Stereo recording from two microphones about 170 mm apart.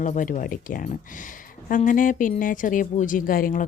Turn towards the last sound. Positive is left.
turn(degrees=55)  # may be behind; listen again after turning